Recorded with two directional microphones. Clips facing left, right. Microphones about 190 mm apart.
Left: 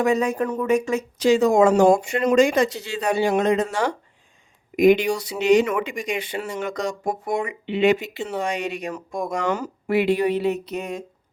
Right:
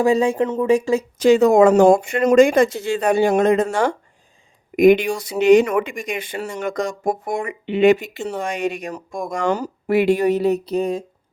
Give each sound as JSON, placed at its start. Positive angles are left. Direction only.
{"t": 0.0, "sound": "speech", "side_deg": -30}
{"t": 1.2, "sound": "speech", "side_deg": -60}